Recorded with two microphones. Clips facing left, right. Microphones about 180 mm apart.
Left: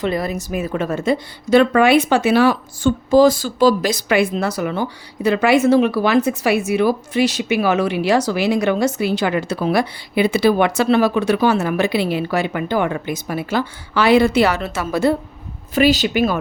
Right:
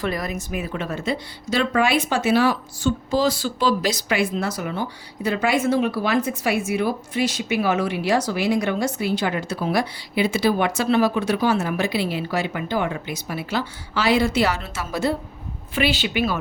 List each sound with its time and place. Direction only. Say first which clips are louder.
0.0 s a woman's voice: left 5 dB; 25° left (ahead or behind); by 15.1 s 60° left (ahead or behind)
15.7 s a woman's voice: left 7 dB; 40° left (ahead or behind)